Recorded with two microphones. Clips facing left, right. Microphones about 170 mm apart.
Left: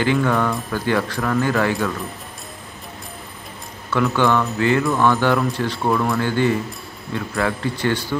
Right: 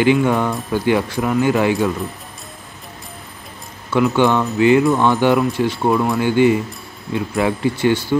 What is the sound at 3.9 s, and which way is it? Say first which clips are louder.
Speech: right 3 dB; 20° right (ahead or behind).